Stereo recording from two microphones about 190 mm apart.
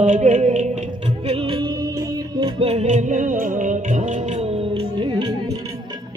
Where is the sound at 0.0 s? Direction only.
40° right (ahead or behind); by 2.5 s 20° right (ahead or behind).